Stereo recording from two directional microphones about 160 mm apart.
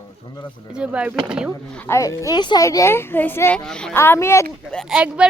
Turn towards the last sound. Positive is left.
turn(degrees=-5)  # may be behind; listen again after turning